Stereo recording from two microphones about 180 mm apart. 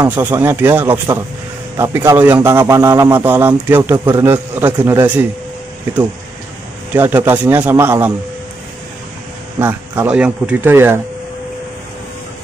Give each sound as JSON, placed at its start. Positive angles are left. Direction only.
{"t": 0.0, "sound": "speech", "side_deg": -20}
{"t": 6.9, "sound": "speech", "side_deg": -10}
{"t": 9.6, "sound": "speech", "side_deg": -10}